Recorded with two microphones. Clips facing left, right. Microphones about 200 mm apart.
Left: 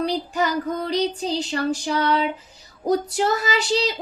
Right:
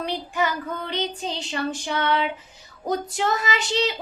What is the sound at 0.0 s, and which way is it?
Speech, 40° left (ahead or behind).